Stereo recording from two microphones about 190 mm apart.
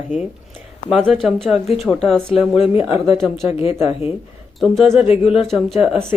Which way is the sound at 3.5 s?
30° left (ahead or behind).